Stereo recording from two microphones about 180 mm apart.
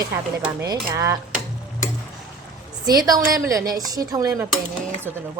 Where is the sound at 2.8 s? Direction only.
20° right (ahead or behind).